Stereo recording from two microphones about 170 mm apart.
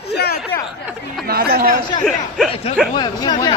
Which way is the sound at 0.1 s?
75° left (ahead or behind).